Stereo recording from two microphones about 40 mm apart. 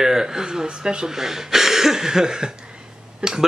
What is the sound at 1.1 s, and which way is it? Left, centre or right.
Speech, centre.